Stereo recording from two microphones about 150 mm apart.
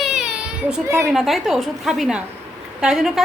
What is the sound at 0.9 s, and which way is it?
Speech, 20° right (ahead or behind).